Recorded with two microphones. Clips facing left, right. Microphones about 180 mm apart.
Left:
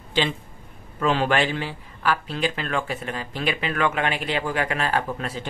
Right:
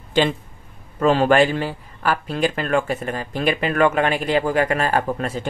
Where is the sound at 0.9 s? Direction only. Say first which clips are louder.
Right 6 dB; 45° right (ahead or behind).